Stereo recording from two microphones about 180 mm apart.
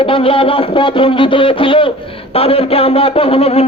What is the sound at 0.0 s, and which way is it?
A man's voice, 30° left (ahead or behind).